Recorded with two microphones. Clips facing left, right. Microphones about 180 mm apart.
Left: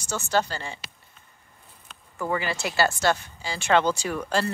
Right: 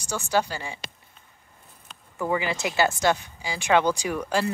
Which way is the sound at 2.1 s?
15° right (ahead or behind).